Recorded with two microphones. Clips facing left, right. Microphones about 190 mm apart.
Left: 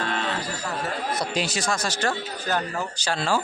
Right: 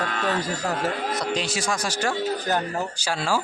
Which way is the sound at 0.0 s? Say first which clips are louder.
Even; 30° left (ahead or behind).